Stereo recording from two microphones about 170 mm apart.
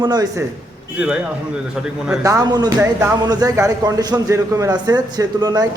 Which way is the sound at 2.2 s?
20° right (ahead or behind).